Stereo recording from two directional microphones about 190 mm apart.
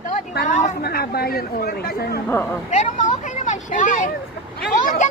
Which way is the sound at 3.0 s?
40° left (ahead or behind).